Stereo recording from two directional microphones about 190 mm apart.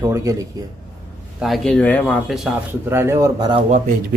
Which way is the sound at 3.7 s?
45° right (ahead or behind).